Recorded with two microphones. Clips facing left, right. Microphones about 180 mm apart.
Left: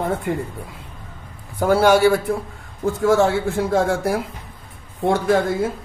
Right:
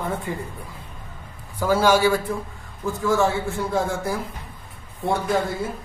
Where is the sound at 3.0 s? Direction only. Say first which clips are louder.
Left 4 dB; 70° left (ahead or behind).